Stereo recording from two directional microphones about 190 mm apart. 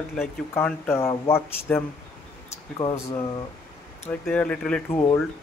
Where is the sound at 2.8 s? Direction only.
30° left (ahead or behind).